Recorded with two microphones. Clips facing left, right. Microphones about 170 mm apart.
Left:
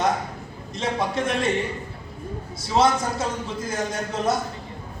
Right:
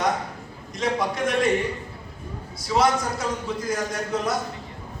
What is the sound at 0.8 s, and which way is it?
Speech, 25° left (ahead or behind).